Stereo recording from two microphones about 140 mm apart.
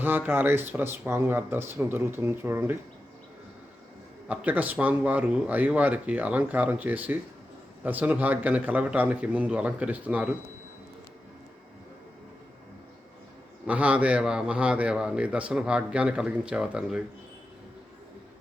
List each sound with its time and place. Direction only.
0.0 s a man's voice: 15° right (ahead or behind)
4.3 s a man's voice: 10° right (ahead or behind)
13.7 s a man's voice: 10° right (ahead or behind)